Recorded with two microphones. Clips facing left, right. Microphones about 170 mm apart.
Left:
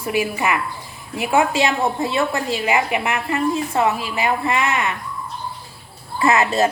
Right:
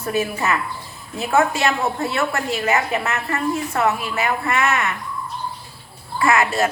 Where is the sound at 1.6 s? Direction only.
15° left (ahead or behind).